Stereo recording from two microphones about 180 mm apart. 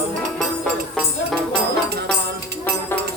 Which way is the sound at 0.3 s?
5° left (ahead or behind).